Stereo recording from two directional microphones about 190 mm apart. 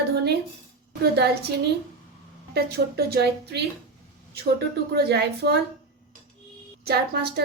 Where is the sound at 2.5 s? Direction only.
55° right (ahead or behind).